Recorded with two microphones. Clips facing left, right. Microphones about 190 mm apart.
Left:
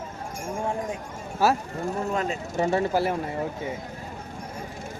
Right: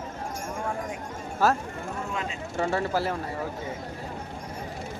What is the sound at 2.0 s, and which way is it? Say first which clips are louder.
Speech: left 6 dB; 40° left (ahead or behind).